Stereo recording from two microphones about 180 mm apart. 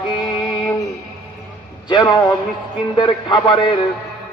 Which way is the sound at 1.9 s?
25° left (ahead or behind).